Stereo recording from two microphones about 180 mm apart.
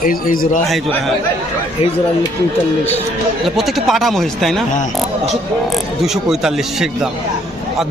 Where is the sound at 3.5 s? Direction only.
Centre (ahead or behind).